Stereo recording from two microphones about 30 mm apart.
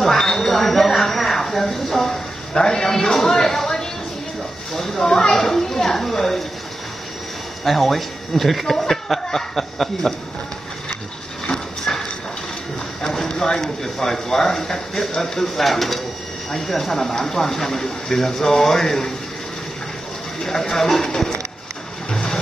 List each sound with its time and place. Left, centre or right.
0.2 s a sound: left
0.5 s speech: centre
2.5 s speech: left
7.6 s speech: centre
11.5 s a sound: centre
13.6 s speech: centre
15.6 s speech: centre
20.4 s speech: centre